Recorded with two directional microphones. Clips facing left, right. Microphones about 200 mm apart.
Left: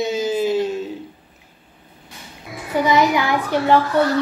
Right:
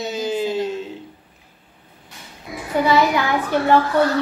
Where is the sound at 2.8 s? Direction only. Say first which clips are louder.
Left 1 dB; 15° left (ahead or behind).